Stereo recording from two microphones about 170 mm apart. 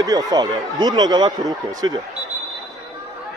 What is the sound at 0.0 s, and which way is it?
Speech, 20° right (ahead or behind).